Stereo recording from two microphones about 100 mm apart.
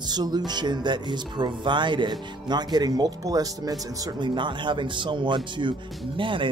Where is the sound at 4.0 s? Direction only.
50° right (ahead or behind).